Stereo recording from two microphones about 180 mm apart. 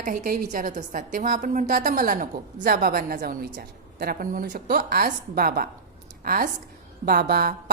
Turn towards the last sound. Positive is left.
turn(degrees=-55)  # may be behind; listen again after turning